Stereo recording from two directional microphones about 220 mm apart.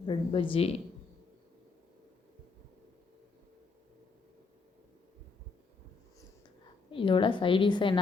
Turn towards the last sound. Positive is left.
turn(degrees=20)  # may be behind; listen again after turning